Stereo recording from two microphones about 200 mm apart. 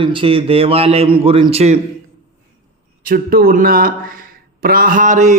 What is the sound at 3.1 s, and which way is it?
Speech, 45° right (ahead or behind).